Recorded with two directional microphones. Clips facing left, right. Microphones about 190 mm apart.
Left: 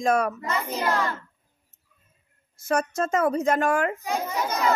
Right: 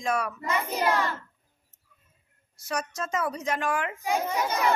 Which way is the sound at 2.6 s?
50° left (ahead or behind).